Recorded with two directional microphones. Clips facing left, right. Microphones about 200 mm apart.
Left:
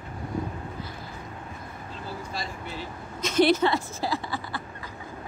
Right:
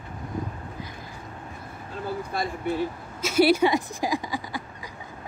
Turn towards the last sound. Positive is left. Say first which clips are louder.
# right 1 dB
turn(degrees=-15)  # may be behind; listen again after turning